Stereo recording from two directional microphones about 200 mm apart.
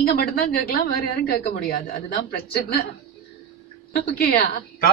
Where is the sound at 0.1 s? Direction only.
50° left (ahead or behind).